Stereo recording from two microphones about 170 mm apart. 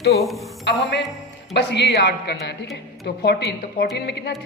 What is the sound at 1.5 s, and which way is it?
A woman's voice, 75° left (ahead or behind).